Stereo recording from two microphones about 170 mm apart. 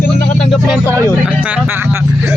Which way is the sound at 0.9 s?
15° right (ahead or behind).